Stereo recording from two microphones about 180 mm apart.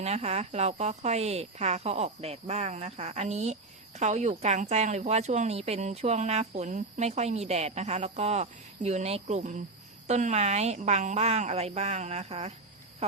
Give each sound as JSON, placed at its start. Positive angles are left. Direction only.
{"t": 0.0, "sound": "speech", "side_deg": -35}